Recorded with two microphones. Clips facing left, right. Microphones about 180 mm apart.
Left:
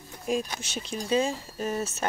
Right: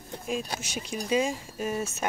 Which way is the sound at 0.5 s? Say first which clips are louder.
Even; 10° right (ahead or behind).